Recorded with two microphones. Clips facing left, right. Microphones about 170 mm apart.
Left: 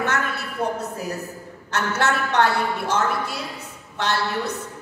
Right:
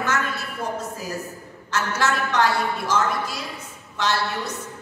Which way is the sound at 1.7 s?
60° left (ahead or behind).